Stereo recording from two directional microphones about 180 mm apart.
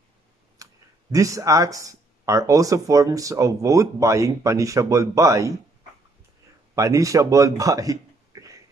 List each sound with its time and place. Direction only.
0.6 s clicking: 20° right (ahead or behind)
1.1 s speech: 20° right (ahead or behind)
6.7 s a man's voice: 15° right (ahead or behind)